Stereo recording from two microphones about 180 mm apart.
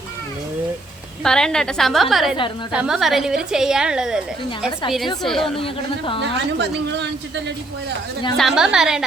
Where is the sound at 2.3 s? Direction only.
25° left (ahead or behind).